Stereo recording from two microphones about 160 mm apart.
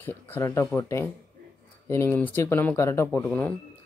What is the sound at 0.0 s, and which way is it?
Speech, 10° left (ahead or behind).